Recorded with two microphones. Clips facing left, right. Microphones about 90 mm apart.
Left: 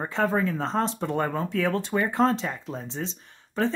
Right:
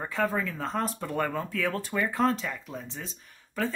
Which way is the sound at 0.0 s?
25° left (ahead or behind).